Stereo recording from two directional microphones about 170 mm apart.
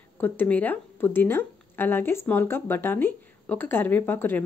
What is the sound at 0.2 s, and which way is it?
Speech, 10° left (ahead or behind).